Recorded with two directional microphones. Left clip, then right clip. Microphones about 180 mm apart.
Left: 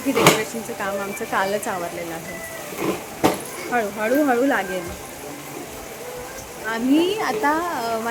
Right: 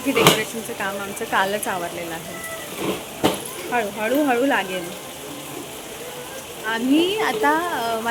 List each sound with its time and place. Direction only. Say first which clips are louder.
0.1 s speech: even; 10° left (ahead or behind)
3.2 s speech: left 1 dB; 5° left (ahead or behind)
6.7 s speech: even; 5° left (ahead or behind)